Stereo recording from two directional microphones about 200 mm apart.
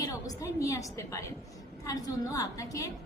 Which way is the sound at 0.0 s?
15° left (ahead or behind).